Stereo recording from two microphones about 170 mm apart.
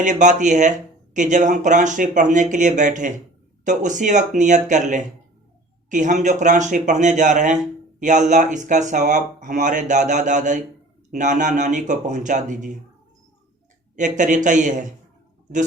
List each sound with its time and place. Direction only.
0.0 s speech: 45° right (ahead or behind)
13.9 s speech: 45° right (ahead or behind)